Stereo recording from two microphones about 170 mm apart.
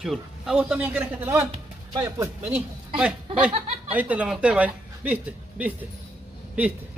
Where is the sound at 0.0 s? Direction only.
Centre (ahead or behind).